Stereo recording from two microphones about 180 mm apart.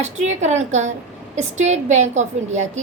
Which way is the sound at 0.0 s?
40° right (ahead or behind).